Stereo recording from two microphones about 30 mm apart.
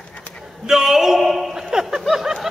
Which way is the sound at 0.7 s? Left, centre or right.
Centre.